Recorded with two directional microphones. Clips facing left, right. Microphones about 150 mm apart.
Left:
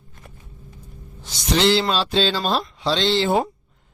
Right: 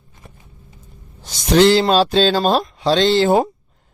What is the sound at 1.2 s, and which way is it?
Speech, 45° right (ahead or behind).